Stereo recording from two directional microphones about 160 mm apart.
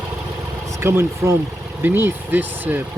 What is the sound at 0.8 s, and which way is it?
Speech, 15° right (ahead or behind).